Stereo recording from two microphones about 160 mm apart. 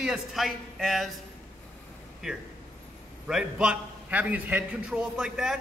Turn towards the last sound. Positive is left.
turn(degrees=-5)  # may be behind; listen again after turning